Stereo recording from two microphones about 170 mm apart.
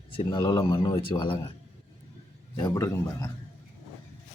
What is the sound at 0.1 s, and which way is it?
Speech, 30° left (ahead or behind).